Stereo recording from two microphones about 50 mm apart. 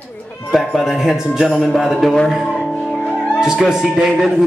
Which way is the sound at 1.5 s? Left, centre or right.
Centre.